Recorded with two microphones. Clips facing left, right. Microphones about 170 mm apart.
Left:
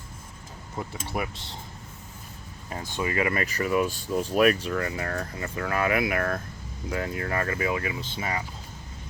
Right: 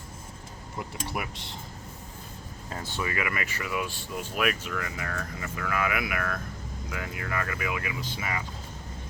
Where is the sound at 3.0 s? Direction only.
30° left (ahead or behind).